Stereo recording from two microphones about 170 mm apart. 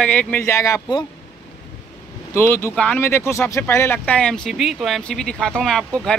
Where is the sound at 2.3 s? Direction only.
15° left (ahead or behind).